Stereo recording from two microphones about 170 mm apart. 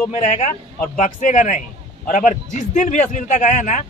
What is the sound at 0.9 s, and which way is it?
A man's voice, 50° left (ahead or behind).